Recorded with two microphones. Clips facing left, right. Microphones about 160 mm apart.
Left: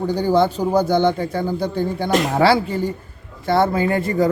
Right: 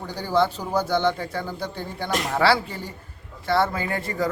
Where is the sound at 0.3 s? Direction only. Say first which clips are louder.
Left 3 dB; 15° left (ahead or behind).